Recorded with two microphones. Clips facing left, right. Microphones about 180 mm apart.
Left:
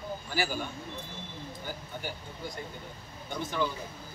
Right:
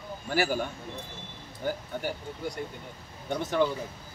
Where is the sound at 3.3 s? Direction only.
70° right (ahead or behind).